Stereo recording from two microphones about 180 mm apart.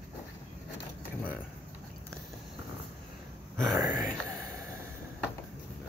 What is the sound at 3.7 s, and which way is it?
Speech, 20° right (ahead or behind).